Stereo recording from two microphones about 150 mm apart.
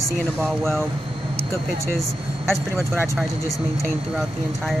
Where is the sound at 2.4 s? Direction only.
15° right (ahead or behind).